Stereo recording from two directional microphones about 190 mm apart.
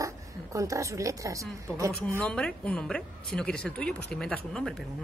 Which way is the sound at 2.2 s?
5° left (ahead or behind).